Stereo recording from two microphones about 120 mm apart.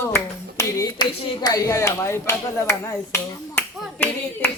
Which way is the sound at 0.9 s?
35° left (ahead or behind).